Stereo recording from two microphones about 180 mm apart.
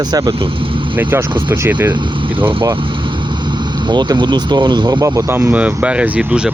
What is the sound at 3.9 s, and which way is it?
Speech, 25° right (ahead or behind).